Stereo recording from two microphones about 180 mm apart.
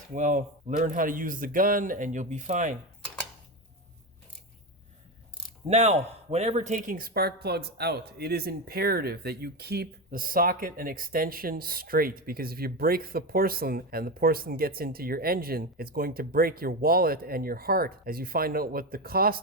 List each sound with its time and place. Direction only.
0.1 s speech: 45° right (ahead or behind)
5.6 s speech: 35° right (ahead or behind); by 19.4 s 55° right (ahead or behind)